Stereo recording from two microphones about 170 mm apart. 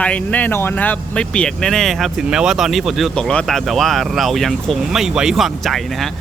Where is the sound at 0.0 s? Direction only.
5° left (ahead or behind).